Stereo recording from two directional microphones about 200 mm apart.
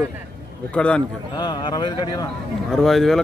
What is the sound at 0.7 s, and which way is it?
Speech, 5° left (ahead or behind).